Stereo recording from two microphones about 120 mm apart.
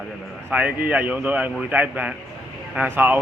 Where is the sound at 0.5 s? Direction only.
15° right (ahead or behind).